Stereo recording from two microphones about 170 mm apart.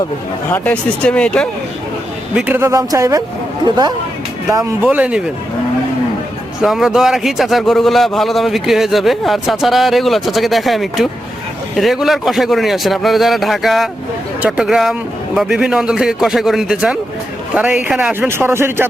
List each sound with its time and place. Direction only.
0.5 s speech: 10° left (ahead or behind)
2.3 s speech: 10° right (ahead or behind)
4.4 s speech: 15° right (ahead or behind)
6.6 s a man's voice: centre (ahead or behind)